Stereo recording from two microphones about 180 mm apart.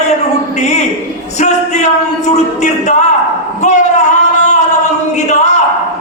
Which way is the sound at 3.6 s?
40° left (ahead or behind).